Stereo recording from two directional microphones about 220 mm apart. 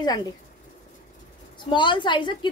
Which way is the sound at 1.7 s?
20° left (ahead or behind).